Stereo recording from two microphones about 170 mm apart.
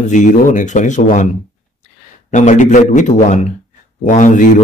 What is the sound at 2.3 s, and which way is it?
Speech, 45° left (ahead or behind).